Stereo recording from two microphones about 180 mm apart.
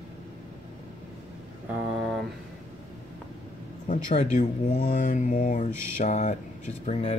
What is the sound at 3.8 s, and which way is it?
Speech, 40° left (ahead or behind).